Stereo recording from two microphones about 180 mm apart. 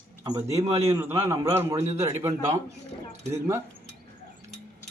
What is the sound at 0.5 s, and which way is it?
Speech, 35° right (ahead or behind).